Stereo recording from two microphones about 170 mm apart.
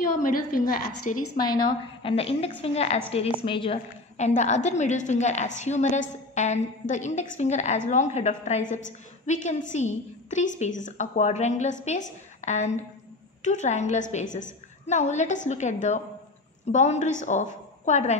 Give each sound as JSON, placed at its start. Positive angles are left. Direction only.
{"t": 0.2, "sound": "a woman's voice", "side_deg": 55}
{"t": 1.1, "sound": "a woman's voice", "side_deg": 45}
{"t": 1.7, "sound": "a woman's voice", "side_deg": 35}